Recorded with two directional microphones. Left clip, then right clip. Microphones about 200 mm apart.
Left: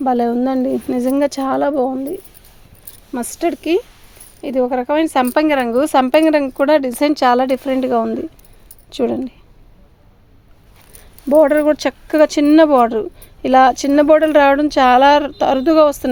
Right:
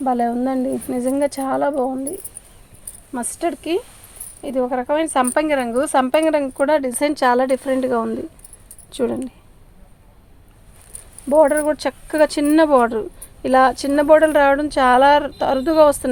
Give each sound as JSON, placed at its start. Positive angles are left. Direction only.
{"t": 0.0, "sound": "speech", "side_deg": 55}
{"t": 11.3, "sound": "speech", "side_deg": 45}